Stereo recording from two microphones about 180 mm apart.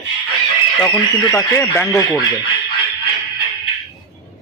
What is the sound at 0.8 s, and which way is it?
Speech, 15° left (ahead or behind).